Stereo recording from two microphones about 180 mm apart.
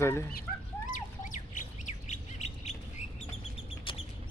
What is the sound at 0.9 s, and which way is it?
Bird, 45° left (ahead or behind).